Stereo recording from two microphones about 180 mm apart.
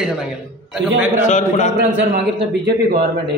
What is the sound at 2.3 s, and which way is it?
Speech, 60° right (ahead or behind).